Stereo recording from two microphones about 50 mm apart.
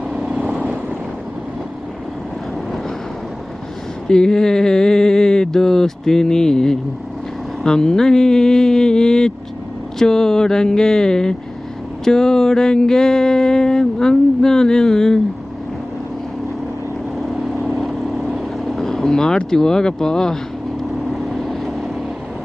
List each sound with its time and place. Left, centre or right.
0.3 s vehicle: right
4.1 s a sound: centre
17.7 s vehicle: centre
18.3 s speech: centre
20.9 s vehicle: centre